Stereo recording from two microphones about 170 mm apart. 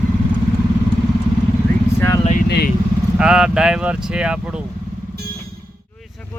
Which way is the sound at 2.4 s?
75° left (ahead or behind).